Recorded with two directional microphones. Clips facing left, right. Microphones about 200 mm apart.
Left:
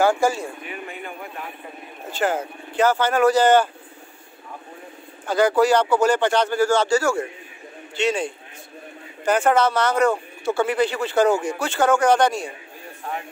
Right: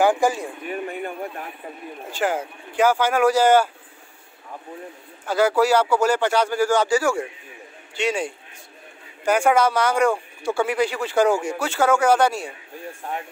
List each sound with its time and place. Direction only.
0.0 s speech: 15° right (ahead or behind)
0.7 s speech: 40° right (ahead or behind)
2.0 s speech: 10° right (ahead or behind)
5.2 s a man's voice: 5° right (ahead or behind)